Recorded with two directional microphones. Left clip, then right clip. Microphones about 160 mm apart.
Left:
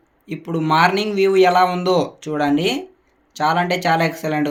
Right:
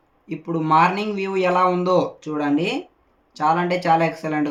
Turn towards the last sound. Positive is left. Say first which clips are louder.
# left 1 dB
turn(degrees=20)  # may be behind; listen again after turning